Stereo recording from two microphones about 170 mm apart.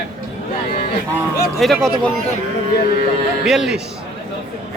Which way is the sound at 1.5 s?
Centre (ahead or behind).